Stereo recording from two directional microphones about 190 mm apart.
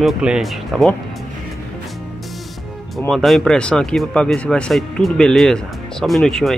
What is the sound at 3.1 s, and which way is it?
Speech, centre (ahead or behind).